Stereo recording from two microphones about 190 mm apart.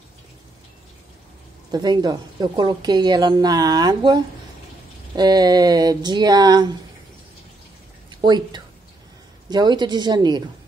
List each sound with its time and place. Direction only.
1.7 s a woman's voice: 20° right (ahead or behind)
8.1 s a woman's voice: 25° right (ahead or behind)